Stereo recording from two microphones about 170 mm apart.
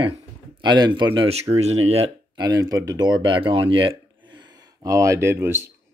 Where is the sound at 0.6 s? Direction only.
25° right (ahead or behind).